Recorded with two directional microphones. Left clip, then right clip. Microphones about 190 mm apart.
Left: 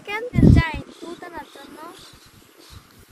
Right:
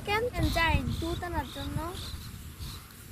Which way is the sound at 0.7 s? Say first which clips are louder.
Right 1 dB; 20° left (ahead or behind).